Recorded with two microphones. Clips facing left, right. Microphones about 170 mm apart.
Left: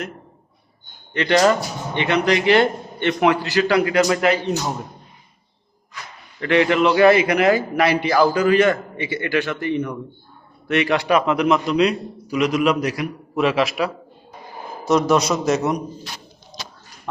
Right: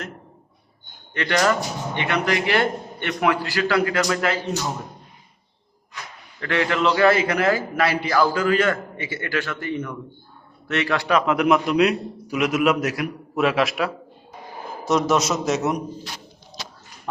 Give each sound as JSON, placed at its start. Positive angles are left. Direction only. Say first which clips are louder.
{"t": 1.1, "sound": "a man's voice", "louder": "left 5 dB", "side_deg": 20}
{"t": 6.4, "sound": "a man's voice", "louder": "left 5 dB", "side_deg": 20}
{"t": 11.3, "sound": "a man's voice", "louder": "left 1 dB", "side_deg": -5}